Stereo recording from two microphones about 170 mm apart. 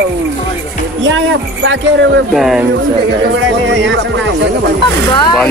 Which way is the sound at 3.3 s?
90° right.